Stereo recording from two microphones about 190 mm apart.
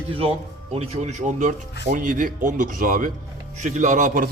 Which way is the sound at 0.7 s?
35° right (ahead or behind).